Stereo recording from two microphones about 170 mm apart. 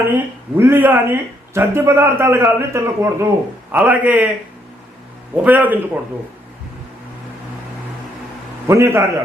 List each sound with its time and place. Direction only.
0.5 s speech: 10° right (ahead or behind)
5.4 s speech: 10° right (ahead or behind)
8.6 s speech: 15° right (ahead or behind)